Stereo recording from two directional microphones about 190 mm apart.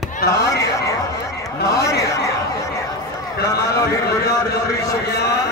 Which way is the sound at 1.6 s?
60° left (ahead or behind).